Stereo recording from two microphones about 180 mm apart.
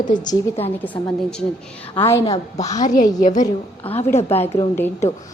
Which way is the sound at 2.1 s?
15° left (ahead or behind).